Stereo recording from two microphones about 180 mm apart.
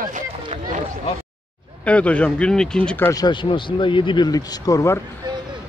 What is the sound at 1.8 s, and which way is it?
Speech, 5° left (ahead or behind).